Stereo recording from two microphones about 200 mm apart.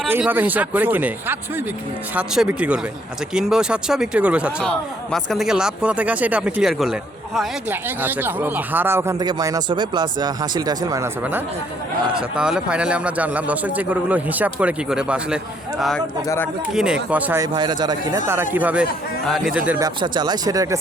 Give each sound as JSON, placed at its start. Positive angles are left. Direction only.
{"t": 0.1, "sound": "a man's voice", "side_deg": -10}
{"t": 16.2, "sound": "speech", "side_deg": 15}
{"t": 16.7, "sound": "speech", "side_deg": -5}
{"t": 18.5, "sound": "speech", "side_deg": -5}
{"t": 20.0, "sound": "speech", "side_deg": -20}